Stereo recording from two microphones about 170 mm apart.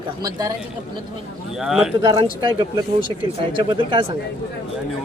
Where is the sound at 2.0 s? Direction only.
30° right (ahead or behind).